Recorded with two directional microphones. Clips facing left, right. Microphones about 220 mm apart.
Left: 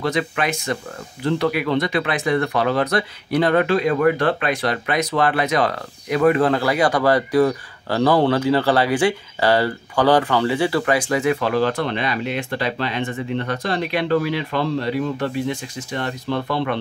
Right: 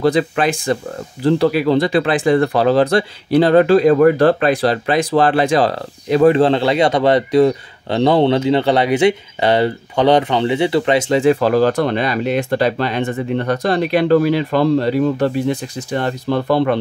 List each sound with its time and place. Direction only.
0.0 s speech: 30° right (ahead or behind)